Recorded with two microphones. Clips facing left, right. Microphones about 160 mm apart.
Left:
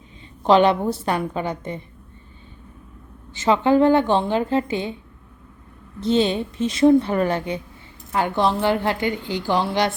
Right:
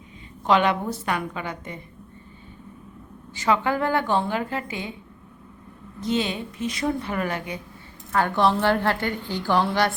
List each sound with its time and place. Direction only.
0.4 s a woman's voice: 30° left (ahead or behind)
3.3 s a woman's voice: 25° left (ahead or behind)
6.0 s a woman's voice: 30° left (ahead or behind)
8.1 s a woman's voice: 15° left (ahead or behind)